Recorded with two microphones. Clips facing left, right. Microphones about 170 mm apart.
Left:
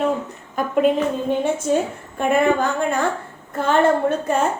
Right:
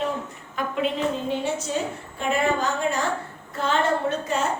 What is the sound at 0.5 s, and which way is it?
A woman's voice, 50° left (ahead or behind).